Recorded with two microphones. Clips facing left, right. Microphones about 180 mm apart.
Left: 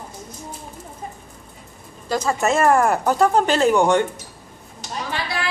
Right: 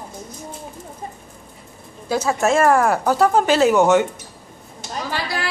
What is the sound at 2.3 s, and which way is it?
Speech, centre (ahead or behind).